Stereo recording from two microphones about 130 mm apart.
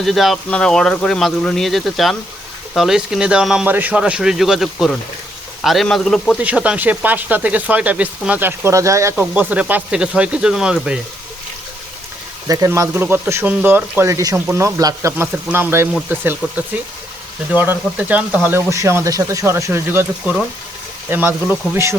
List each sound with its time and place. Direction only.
0.0 s speech: centre (ahead or behind)
6.4 s speech: 10° right (ahead or behind)
9.1 s speech: 10° right (ahead or behind)
12.5 s speech: 25° right (ahead or behind)